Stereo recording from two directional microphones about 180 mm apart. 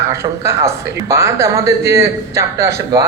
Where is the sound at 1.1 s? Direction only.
15° right (ahead or behind).